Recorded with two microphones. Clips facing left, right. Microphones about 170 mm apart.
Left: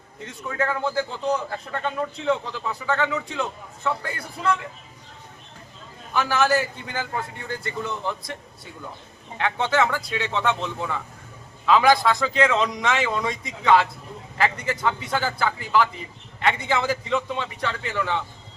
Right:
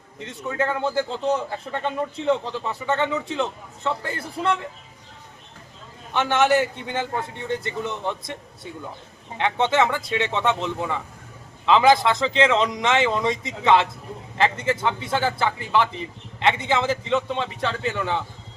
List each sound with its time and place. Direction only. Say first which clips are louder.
0.3 s a man's voice: right 1 dB; 20° right (ahead or behind)
6.1 s a man's voice: right 2 dB; 25° right (ahead or behind)
9.4 s a man's voice: right 2 dB; 20° right (ahead or behind)